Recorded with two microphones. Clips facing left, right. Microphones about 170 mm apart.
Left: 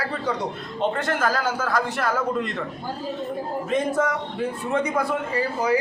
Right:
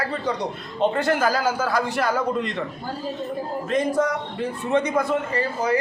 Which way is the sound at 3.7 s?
5° left (ahead or behind).